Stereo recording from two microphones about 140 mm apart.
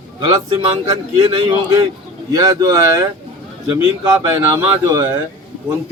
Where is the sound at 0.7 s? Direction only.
40° right (ahead or behind).